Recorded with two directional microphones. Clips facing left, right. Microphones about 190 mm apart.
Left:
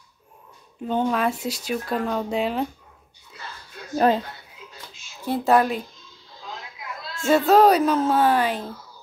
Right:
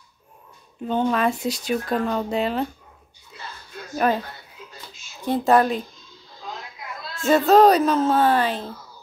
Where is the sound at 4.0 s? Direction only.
25° left (ahead or behind).